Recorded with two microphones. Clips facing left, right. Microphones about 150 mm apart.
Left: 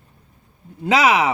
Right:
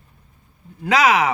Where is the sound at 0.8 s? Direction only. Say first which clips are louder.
Even; 25° left (ahead or behind).